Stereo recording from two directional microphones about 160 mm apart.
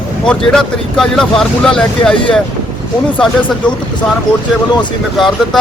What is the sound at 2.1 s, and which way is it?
Speech, 30° left (ahead or behind).